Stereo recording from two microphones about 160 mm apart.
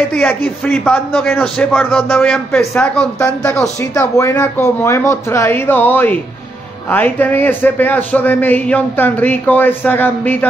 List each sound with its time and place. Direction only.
0.1 s a man's voice: 10° left (ahead or behind)